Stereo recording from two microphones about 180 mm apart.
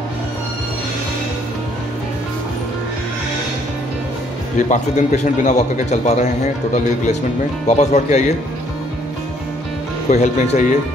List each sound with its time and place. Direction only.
4.6 s a man's voice: 40° left (ahead or behind)
10.1 s a man's voice: 40° left (ahead or behind)